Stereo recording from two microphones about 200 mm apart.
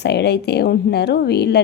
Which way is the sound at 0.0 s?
55° left (ahead or behind).